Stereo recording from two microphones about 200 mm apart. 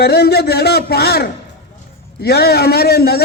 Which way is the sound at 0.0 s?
50° left (ahead or behind).